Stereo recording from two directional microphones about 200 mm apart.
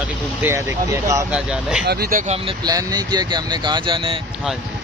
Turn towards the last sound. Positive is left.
turn(degrees=-25)  # may be behind; listen again after turning